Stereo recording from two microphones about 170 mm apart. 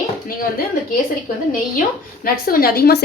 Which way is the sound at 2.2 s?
60° left (ahead or behind).